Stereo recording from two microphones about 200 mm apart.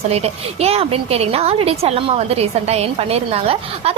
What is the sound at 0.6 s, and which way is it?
A woman's voice, 30° right (ahead or behind).